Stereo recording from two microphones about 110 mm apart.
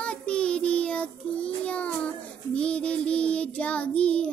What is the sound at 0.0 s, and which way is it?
Child singing, 10° left (ahead or behind).